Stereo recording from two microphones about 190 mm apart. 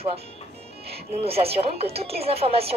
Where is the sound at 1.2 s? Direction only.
30° right (ahead or behind).